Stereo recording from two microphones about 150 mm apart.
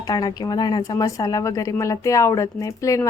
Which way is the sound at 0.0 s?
25° left (ahead or behind).